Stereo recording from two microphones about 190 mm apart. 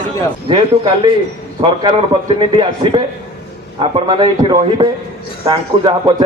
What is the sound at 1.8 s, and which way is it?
A man's voice, 20° right (ahead or behind).